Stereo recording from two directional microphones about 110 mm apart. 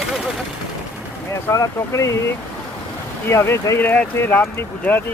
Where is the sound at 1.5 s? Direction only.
25° left (ahead or behind).